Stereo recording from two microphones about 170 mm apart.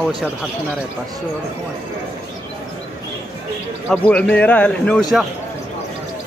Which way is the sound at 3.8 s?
5° left (ahead or behind).